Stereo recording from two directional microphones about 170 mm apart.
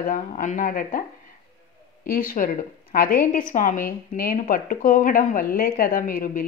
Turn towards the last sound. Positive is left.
turn(degrees=55)  # may be behind; listen again after turning